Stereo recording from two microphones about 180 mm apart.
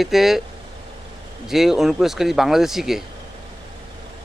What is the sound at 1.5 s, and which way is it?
Speech, centre (ahead or behind).